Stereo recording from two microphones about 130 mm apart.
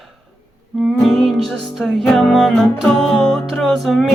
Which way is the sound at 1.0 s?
Centre (ahead or behind).